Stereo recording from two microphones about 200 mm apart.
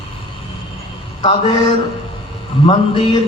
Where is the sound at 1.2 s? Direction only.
20° left (ahead or behind).